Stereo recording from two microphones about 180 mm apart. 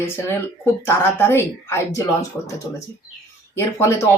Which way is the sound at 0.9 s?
15° left (ahead or behind).